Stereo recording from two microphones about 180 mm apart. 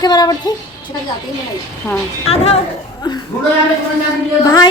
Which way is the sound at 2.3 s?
35° left (ahead or behind).